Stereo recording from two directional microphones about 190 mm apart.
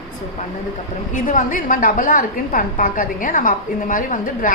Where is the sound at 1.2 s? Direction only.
45° left (ahead or behind).